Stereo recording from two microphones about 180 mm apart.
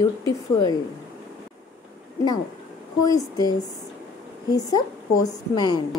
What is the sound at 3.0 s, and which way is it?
Speech, 20° left (ahead or behind).